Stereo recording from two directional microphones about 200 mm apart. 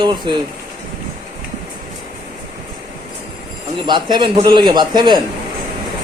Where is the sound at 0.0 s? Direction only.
20° right (ahead or behind).